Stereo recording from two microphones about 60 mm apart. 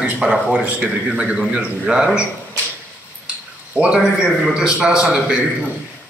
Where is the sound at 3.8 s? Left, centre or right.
Centre.